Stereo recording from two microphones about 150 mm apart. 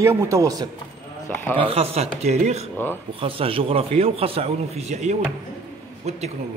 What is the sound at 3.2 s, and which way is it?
Speech, 40° right (ahead or behind).